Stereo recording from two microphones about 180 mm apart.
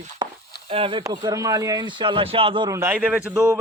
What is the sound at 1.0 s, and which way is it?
Speech, 20° right (ahead or behind).